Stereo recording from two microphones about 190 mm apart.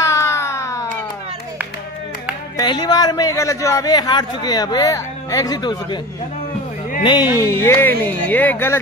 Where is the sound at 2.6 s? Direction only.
20° left (ahead or behind).